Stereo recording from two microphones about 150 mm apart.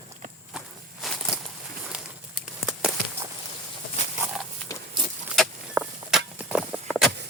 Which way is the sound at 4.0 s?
50° left (ahead or behind).